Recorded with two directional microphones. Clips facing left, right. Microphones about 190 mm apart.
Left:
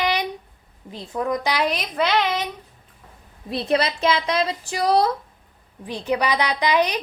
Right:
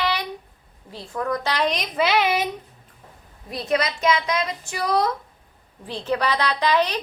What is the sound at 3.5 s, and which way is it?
A woman's voice, 30° left (ahead or behind).